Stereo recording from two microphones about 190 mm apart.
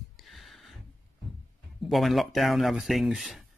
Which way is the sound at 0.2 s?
Centre (ahead or behind).